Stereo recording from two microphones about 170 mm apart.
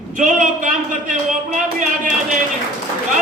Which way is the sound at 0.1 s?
50° right (ahead or behind).